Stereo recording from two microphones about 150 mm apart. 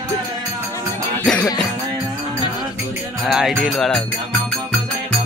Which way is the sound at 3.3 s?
Centre (ahead or behind).